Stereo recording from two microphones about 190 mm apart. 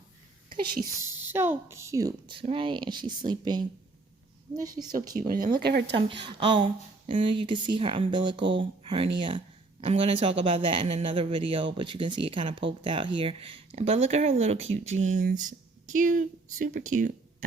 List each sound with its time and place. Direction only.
0.9 s speech: 10° right (ahead or behind)
5.2 s speech: 40° right (ahead or behind)
5.5 s speech: 60° right (ahead or behind)
6.0 s speech: 25° right (ahead or behind); by 17.1 s 45° right (ahead or behind)